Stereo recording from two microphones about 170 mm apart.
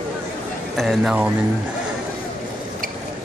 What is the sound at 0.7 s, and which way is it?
Speech, centre (ahead or behind).